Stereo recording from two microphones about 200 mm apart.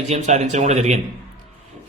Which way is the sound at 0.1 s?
35° right (ahead or behind).